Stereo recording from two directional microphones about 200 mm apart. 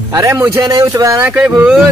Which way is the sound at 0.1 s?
15° right (ahead or behind).